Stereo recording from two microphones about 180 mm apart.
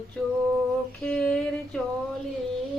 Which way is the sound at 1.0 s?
5° left (ahead or behind).